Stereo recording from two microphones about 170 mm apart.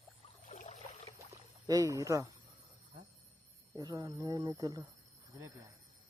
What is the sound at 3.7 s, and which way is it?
Speech, 20° right (ahead or behind).